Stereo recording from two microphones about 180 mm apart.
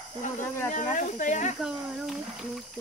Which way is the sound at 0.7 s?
45° left (ahead or behind).